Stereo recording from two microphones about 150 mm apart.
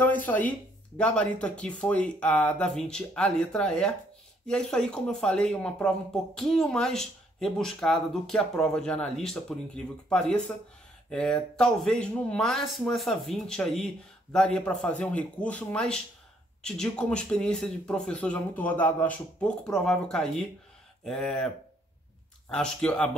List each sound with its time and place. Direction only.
0.0 s speech: 10° left (ahead or behind)
22.5 s speech: 5° left (ahead or behind)